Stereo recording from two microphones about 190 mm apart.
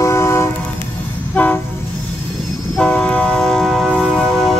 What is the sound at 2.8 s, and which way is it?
Train, 5° left (ahead or behind).